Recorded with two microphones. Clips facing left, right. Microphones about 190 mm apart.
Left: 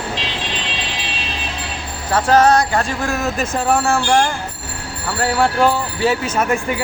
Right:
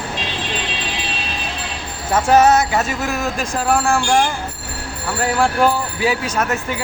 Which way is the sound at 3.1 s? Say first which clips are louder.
Left 2 dB; centre (ahead or behind).